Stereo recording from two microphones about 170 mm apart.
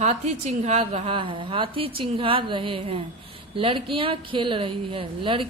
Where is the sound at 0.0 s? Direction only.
40° right (ahead or behind).